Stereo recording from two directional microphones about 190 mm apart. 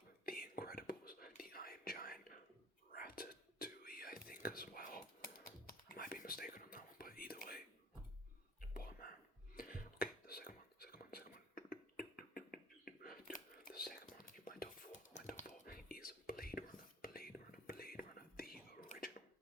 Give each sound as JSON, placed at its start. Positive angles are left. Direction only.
{"t": 0.3, "sound": "whispering", "side_deg": 50}
{"t": 8.7, "sound": "whispering", "side_deg": 50}